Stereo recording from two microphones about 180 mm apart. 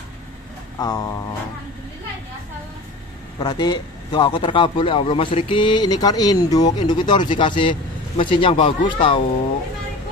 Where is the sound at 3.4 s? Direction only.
25° left (ahead or behind).